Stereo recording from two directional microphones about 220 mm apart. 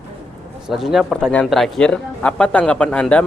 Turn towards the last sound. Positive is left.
turn(degrees=5)  # may be behind; listen again after turning